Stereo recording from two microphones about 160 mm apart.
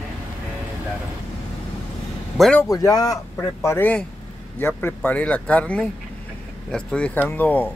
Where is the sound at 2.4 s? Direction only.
5° left (ahead or behind).